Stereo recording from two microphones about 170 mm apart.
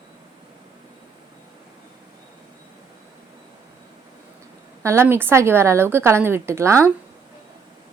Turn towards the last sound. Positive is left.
turn(degrees=-15)  # may be behind; listen again after turning